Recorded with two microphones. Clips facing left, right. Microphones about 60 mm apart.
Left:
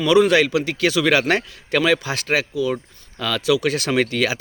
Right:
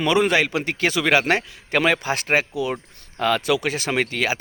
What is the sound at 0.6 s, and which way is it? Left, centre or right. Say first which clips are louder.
A man's voice: left 3 dB; right.